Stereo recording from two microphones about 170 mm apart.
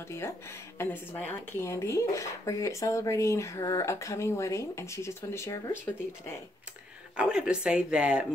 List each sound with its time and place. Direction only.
0.1 s speech: 15° left (ahead or behind)
7.2 s speech: 5° right (ahead or behind)